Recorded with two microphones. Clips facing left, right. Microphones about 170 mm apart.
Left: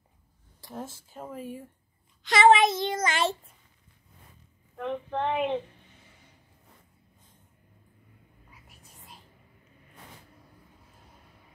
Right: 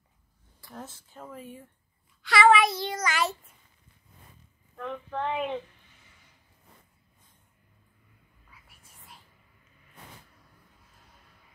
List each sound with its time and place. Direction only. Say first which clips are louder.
1.1 s speech: left 5 dB; 15° left (ahead or behind)
2.2 s child singing: left 2 dB; 20° left (ahead or behind)
4.8 s a sound: left 3 dB; 20° left (ahead or behind)
8.5 s whispering: left 2 dB; 20° left (ahead or behind)